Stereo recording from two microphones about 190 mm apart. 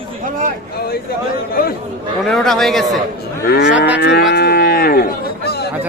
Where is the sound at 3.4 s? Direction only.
55° left (ahead or behind).